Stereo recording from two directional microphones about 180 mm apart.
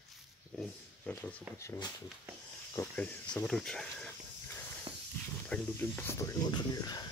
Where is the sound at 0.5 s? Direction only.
5° left (ahead or behind).